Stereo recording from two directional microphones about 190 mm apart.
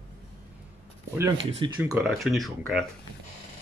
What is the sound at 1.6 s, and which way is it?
Speech, 25° right (ahead or behind).